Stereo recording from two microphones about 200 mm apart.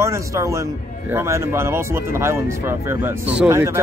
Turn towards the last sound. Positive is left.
turn(degrees=-15)  # may be behind; listen again after turning